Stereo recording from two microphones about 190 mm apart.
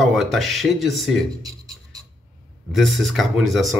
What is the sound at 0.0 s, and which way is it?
Speech, centre (ahead or behind).